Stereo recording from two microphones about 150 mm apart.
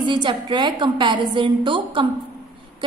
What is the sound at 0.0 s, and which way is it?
A woman's voice, 30° right (ahead or behind).